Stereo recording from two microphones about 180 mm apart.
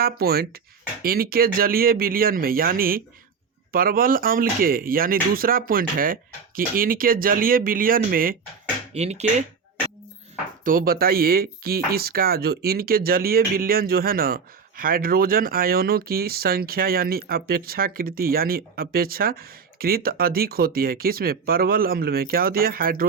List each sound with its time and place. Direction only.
0.0 s speech: 60° right (ahead or behind)
8.9 s speech: 35° right (ahead or behind)
10.6 s speech: 50° right (ahead or behind)